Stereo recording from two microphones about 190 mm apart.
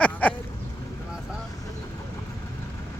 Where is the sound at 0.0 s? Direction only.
5° left (ahead or behind).